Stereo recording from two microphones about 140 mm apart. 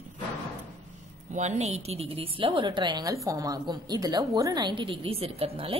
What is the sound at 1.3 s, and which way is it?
Speech, 55° right (ahead or behind).